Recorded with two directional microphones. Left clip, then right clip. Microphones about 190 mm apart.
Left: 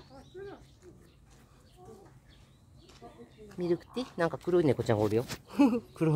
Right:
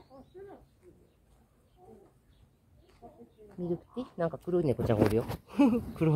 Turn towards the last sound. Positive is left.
turn(degrees=0)  # may be behind; listen again after turning